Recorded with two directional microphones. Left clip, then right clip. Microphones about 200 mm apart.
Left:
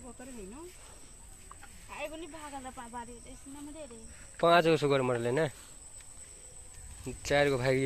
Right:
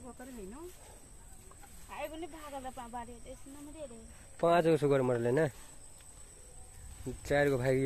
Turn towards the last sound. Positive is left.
turn(degrees=-5)  # may be behind; listen again after turning